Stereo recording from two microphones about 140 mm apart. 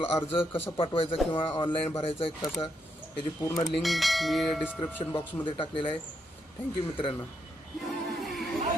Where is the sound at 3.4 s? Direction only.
25° left (ahead or behind).